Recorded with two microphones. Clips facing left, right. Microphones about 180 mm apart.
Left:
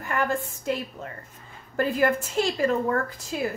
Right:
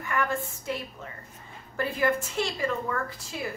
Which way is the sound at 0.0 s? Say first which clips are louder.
Left 2 dB; 40° left (ahead or behind).